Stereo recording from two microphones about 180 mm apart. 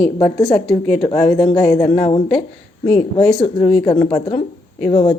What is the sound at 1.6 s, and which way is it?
A woman's voice, 20° left (ahead or behind).